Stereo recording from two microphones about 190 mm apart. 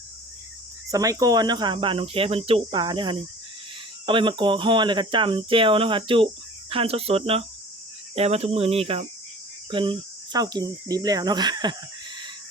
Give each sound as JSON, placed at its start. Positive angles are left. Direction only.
{"t": 0.9, "sound": "speech", "side_deg": -20}
{"t": 6.7, "sound": "cricket", "side_deg": -30}
{"t": 9.6, "sound": "speech", "side_deg": -25}